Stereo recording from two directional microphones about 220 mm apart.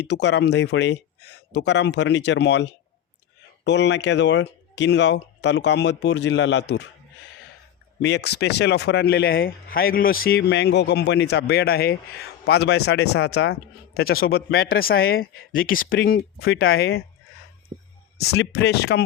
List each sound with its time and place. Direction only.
0.0 s speech: 50° left (ahead or behind)
8.0 s speech: 50° left (ahead or behind)
16.5 s speech: 55° left (ahead or behind)
18.3 s speech: 50° left (ahead or behind)